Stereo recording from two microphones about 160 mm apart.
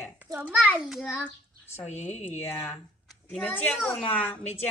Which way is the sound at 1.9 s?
45° left (ahead or behind).